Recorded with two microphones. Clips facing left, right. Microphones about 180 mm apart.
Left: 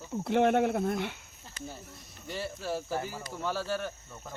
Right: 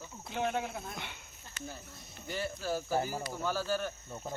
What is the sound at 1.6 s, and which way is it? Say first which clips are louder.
Speech: left 2 dB; 35° left (ahead or behind).